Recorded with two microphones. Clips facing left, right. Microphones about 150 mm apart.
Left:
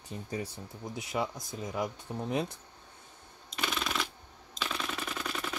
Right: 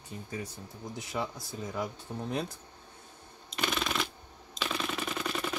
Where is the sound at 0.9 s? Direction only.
15° left (ahead or behind).